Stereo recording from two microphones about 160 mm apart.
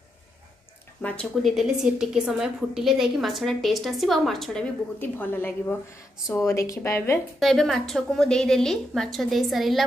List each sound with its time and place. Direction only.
1.0 s a woman's voice: 5° left (ahead or behind)
7.3 s a woman's voice: centre (ahead or behind)